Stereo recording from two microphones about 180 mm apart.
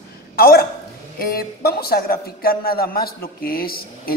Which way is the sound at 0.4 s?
60° left (ahead or behind).